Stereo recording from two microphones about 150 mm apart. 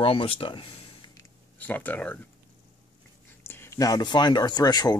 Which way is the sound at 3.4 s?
15° left (ahead or behind).